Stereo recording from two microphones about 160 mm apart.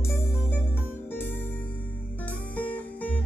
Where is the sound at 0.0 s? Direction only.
15° left (ahead or behind).